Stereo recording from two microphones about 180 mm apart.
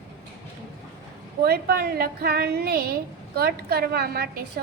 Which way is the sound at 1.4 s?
60° right (ahead or behind).